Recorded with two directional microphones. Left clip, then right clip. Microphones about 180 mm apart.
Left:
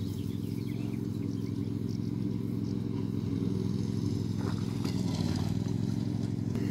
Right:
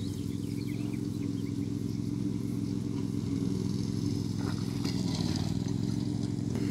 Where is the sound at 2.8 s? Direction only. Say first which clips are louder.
Right 1 dB; 10° left (ahead or behind).